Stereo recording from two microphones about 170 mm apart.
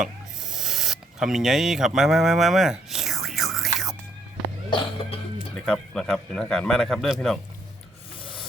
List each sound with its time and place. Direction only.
0.0 s a sound: centre (ahead or behind)
4.7 s speech: 30° left (ahead or behind)
5.5 s a man's voice: 5° left (ahead or behind)